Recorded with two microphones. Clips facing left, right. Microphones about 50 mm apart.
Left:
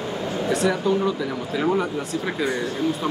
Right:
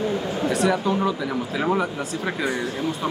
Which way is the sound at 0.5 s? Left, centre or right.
Centre.